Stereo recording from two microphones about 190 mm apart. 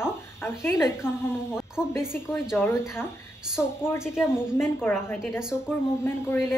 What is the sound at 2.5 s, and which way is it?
A woman's voice, 15° left (ahead or behind).